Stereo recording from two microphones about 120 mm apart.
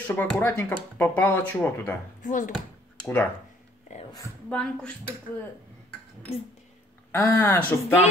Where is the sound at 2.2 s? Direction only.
90° left.